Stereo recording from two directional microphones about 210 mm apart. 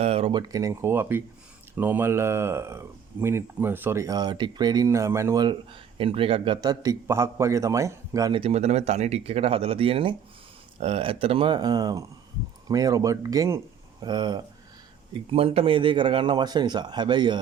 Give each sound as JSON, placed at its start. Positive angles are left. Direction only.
{"t": 0.0, "sound": "a man's voice", "side_deg": -30}